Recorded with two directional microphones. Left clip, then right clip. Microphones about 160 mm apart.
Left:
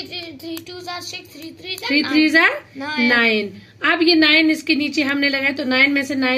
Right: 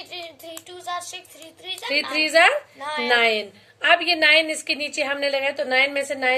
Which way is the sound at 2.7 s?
75° right (ahead or behind).